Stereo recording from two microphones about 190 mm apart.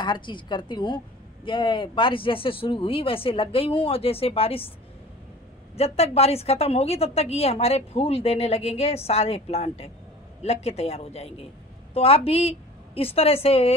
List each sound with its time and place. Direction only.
0.0 s a woman's voice: 25° left (ahead or behind)
5.8 s a woman's voice: 30° left (ahead or behind)